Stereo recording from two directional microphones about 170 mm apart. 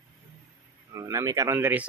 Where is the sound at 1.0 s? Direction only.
20° right (ahead or behind).